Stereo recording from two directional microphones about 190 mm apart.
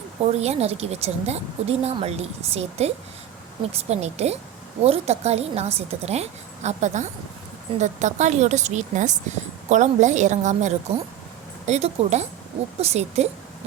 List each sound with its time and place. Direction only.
0.3 s speech: 35° right (ahead or behind)